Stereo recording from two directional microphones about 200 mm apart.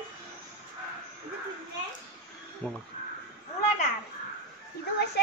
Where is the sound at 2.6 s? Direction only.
10° left (ahead or behind).